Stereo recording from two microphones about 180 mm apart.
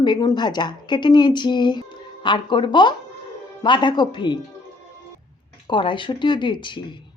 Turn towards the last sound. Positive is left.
turn(degrees=25)  # may be behind; listen again after turning